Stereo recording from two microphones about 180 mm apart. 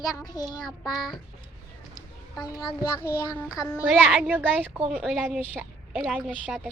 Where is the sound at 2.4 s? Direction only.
20° left (ahead or behind).